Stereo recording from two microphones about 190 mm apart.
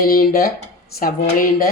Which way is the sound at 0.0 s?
50° left (ahead or behind).